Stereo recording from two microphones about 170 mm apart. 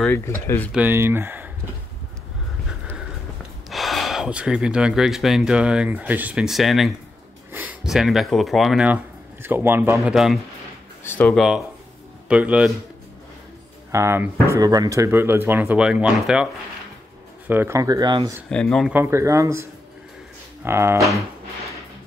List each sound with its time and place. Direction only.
0.1 s speech: 15° left (ahead or behind)
0.7 s speech: 10° right (ahead or behind)
3.7 s speech: centre (ahead or behind)
10.1 s speech: centre (ahead or behind)
13.9 s speech: 15° right (ahead or behind)
17.5 s speech: 15° right (ahead or behind)
18.5 s speech: 5° left (ahead or behind)
18.9 s speech: 15° right (ahead or behind)